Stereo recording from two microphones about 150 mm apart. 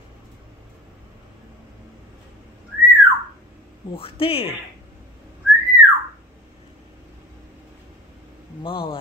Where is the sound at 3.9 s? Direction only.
40° left (ahead or behind).